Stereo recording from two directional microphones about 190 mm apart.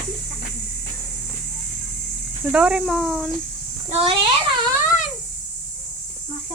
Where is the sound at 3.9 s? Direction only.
30° right (ahead or behind).